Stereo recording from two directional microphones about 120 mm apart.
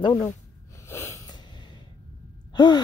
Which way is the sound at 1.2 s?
35° left (ahead or behind).